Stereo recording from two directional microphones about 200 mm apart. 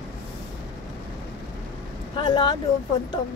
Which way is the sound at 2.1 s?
25° left (ahead or behind).